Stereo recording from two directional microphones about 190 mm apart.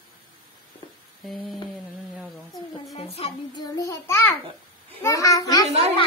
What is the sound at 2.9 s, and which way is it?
A child's voice, 30° left (ahead or behind).